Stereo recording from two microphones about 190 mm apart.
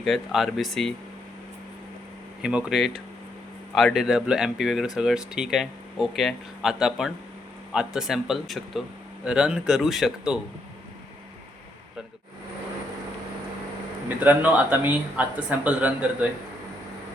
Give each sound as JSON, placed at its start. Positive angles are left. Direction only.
{"t": 0.0, "sound": "speech", "side_deg": 0}
{"t": 2.4, "sound": "speech", "side_deg": -5}
{"t": 14.3, "sound": "speech", "side_deg": -10}